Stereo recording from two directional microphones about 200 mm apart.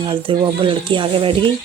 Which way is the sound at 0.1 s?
25° right (ahead or behind).